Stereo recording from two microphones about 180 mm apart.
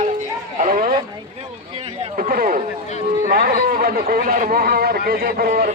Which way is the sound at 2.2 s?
55° right (ahead or behind).